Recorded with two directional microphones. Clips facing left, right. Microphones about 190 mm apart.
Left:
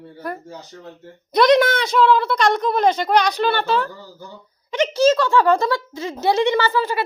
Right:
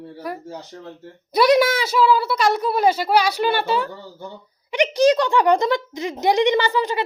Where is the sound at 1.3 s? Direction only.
5° right (ahead or behind).